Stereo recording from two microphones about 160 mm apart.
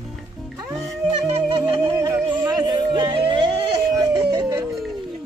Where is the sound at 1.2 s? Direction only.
35° right (ahead or behind).